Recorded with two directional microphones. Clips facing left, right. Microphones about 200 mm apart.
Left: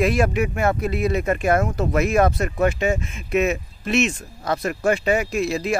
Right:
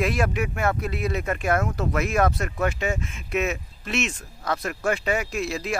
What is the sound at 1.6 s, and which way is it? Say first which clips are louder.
Speech: left 5 dB; 25° left (ahead or behind).